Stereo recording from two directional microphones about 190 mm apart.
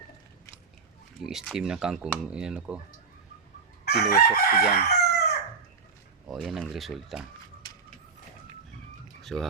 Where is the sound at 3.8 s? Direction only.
55° left (ahead or behind).